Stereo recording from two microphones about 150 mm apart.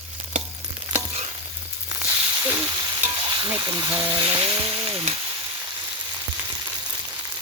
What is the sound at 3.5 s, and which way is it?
Speech, 25° right (ahead or behind).